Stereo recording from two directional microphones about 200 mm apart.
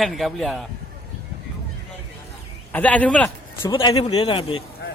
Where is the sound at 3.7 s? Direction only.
25° left (ahead or behind).